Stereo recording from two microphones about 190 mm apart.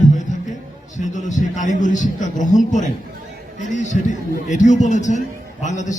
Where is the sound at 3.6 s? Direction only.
40° left (ahead or behind).